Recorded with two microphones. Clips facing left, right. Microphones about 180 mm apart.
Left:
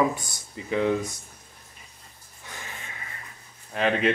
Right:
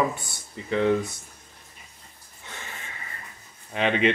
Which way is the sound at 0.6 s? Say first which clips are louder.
Right 2 dB; 10° left (ahead or behind).